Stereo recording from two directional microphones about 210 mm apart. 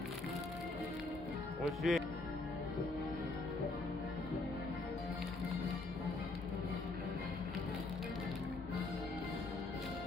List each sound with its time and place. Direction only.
1.8 s speech: centre (ahead or behind)